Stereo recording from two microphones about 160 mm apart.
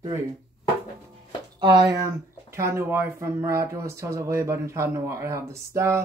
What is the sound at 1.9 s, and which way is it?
Speech, 20° right (ahead or behind).